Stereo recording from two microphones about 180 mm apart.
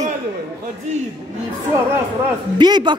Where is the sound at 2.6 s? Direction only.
25° right (ahead or behind).